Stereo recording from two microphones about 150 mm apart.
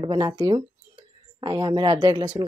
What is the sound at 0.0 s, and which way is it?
A woman's voice, 30° right (ahead or behind).